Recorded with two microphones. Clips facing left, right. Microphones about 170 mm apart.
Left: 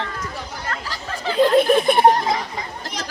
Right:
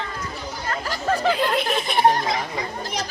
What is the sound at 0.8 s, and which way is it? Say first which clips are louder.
Chatter: right 7 dB; 50° right (ahead or behind).